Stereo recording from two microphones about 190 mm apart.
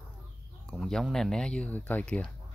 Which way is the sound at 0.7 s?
Centre (ahead or behind).